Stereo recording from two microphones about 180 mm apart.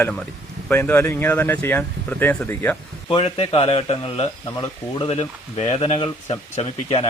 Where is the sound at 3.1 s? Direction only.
30° left (ahead or behind).